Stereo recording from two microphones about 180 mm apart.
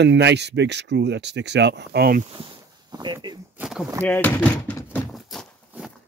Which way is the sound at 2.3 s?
25° right (ahead or behind).